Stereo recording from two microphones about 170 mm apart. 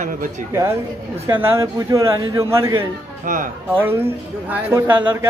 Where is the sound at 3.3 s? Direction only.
50° right (ahead or behind).